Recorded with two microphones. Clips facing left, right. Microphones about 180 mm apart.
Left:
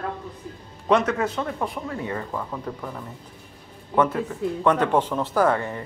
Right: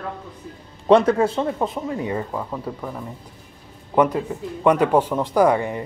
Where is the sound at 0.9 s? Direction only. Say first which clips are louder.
Right 6 dB; 30° right (ahead or behind).